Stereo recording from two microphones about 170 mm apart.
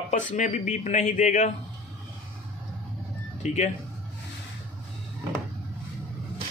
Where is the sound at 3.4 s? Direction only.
40° left (ahead or behind).